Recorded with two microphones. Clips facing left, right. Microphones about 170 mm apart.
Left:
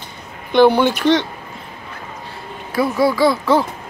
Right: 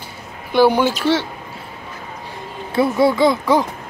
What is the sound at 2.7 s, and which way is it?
Speech, 25° right (ahead or behind).